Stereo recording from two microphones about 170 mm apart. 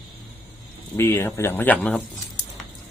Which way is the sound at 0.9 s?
15° left (ahead or behind).